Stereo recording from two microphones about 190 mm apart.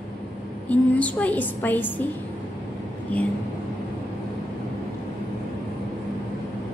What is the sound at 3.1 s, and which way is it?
Speech, 5° left (ahead or behind).